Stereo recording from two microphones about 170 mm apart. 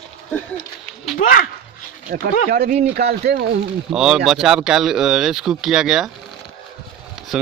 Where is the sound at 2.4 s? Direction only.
55° right (ahead or behind).